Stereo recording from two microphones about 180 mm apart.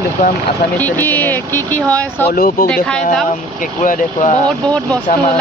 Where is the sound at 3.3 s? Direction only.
45° left (ahead or behind).